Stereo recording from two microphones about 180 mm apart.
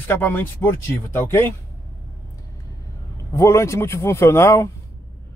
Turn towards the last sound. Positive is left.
turn(degrees=15)  # may be behind; listen again after turning